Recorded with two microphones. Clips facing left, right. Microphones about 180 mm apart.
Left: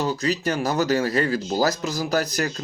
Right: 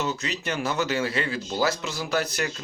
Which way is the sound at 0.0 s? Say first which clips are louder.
Left 6 dB; 35° left (ahead or behind).